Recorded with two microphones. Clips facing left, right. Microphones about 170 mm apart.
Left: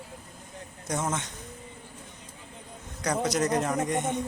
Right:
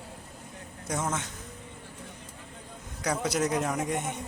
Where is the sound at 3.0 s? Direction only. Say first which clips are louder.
Left 2 dB; 10° right (ahead or behind).